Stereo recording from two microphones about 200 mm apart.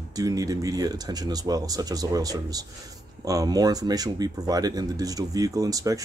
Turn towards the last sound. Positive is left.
turn(degrees=-15)  # may be behind; listen again after turning